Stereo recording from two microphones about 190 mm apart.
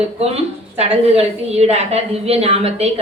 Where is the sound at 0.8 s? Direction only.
35° right (ahead or behind).